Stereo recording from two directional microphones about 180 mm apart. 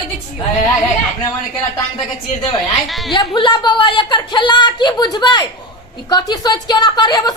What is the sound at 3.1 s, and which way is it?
Speech, 25° left (ahead or behind).